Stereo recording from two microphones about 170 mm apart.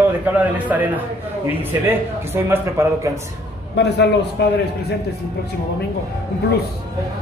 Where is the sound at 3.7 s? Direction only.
80° left.